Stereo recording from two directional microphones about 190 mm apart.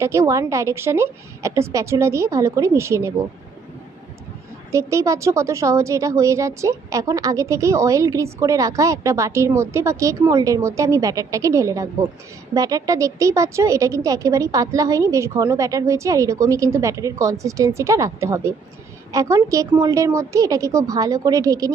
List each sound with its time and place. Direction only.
0.0 s a woman's voice: 15° right (ahead or behind)
4.7 s a woman's voice: 15° right (ahead or behind)